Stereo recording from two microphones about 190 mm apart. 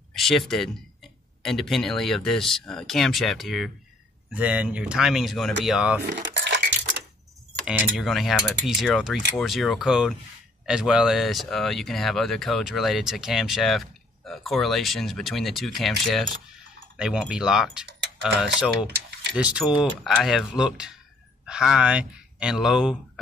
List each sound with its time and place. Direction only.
0.1 s speech: centre (ahead or behind)
6.0 s cutlery: 65° right (ahead or behind)
7.6 s speech: centre (ahead or behind)